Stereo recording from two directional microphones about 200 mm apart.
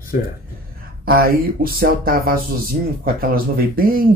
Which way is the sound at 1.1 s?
50° right (ahead or behind).